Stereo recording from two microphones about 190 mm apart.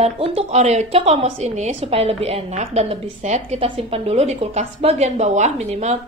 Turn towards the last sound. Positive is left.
turn(degrees=-35)  # may be behind; listen again after turning